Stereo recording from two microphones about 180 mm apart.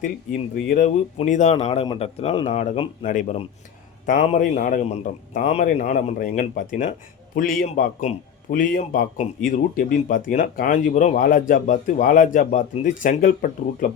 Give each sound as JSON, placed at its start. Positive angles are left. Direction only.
{"t": 0.5, "sound": "a man's voice", "side_deg": 50}